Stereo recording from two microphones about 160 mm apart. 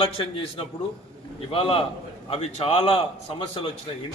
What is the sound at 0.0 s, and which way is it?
A man's voice, 35° left (ahead or behind).